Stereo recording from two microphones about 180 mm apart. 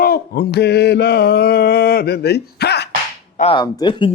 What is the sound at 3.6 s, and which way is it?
Speech, 25° left (ahead or behind).